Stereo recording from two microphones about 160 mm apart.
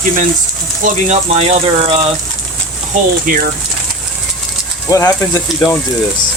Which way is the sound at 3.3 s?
65° right (ahead or behind).